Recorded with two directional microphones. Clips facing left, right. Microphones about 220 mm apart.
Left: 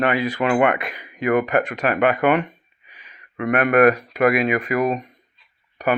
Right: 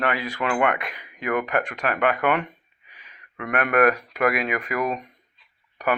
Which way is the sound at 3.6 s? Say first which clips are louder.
Left 4 dB; 30° left (ahead or behind).